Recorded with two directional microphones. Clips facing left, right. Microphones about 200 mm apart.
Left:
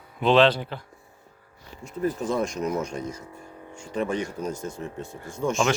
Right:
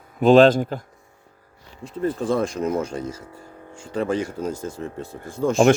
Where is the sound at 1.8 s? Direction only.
30° right (ahead or behind).